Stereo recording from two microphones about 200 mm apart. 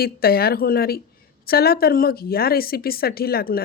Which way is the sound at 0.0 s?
50° left (ahead or behind).